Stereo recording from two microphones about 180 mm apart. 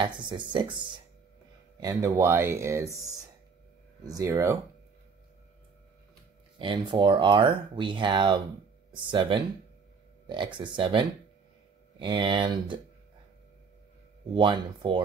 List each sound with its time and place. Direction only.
0.0 s speech: 25° right (ahead or behind)
4.1 s speech: 15° right (ahead or behind)
6.6 s speech: 25° right (ahead or behind)
14.3 s speech: 25° right (ahead or behind)